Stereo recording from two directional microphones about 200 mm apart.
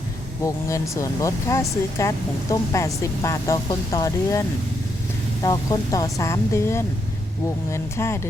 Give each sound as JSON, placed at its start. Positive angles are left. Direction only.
{"t": 0.4, "sound": "speech", "side_deg": 15}